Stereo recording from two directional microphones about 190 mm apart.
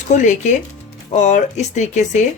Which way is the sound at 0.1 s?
40° left (ahead or behind).